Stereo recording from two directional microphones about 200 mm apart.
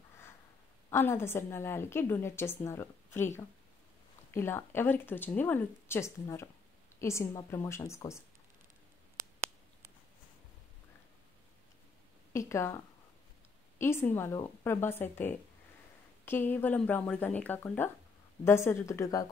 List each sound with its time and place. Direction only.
0.8 s a woman's voice: 10° left (ahead or behind)
4.3 s a woman's voice: 10° left (ahead or behind)
12.3 s a woman's voice: 15° left (ahead or behind)